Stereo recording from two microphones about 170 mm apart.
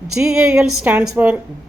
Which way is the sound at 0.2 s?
5° right (ahead or behind).